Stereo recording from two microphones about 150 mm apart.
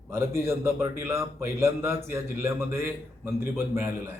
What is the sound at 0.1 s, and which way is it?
A man's voice, 20° right (ahead or behind).